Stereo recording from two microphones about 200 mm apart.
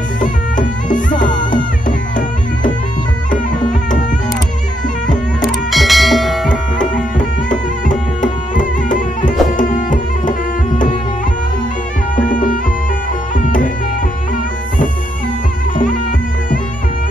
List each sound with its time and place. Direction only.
0.2 s music: 40° left (ahead or behind)
5.4 s music: centre (ahead or behind)
7.2 s music: 40° left (ahead or behind)
12.3 s music: 40° left (ahead or behind)